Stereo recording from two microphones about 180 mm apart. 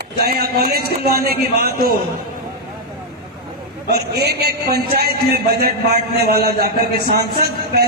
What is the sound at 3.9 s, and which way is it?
A man's voice, 65° right (ahead or behind).